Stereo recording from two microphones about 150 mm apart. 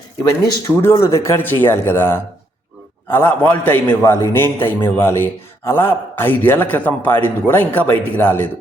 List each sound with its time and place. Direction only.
0.4 s a man's voice: 20° left (ahead or behind)